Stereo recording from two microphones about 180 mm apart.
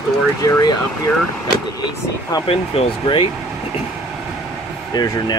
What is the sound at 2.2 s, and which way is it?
Speech, 20° left (ahead or behind).